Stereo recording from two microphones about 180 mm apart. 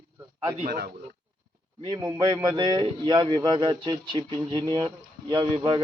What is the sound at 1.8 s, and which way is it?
A man's voice, 25° right (ahead or behind).